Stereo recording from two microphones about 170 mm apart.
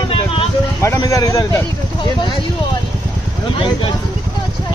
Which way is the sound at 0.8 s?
20° left (ahead or behind).